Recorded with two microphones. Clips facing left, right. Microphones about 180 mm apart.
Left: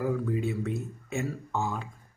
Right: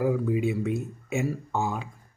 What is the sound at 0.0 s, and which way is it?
Speech, 15° right (ahead or behind).